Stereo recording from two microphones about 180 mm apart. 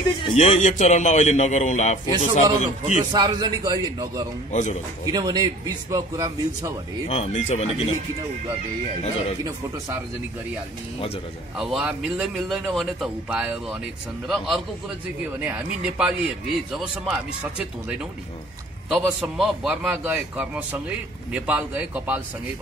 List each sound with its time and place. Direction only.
0.4 s a man's voice: 40° left (ahead or behind)
3.1 s a man's voice: 20° right (ahead or behind)
4.5 s a man's voice: 40° left (ahead or behind)
5.0 s a man's voice: 20° right (ahead or behind)
7.1 s a man's voice: 40° left (ahead or behind)
11.5 s a man's voice: centre (ahead or behind)